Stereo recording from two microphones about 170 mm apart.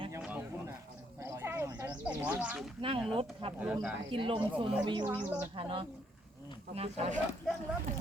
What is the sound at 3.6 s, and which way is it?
Speech, 5° right (ahead or behind).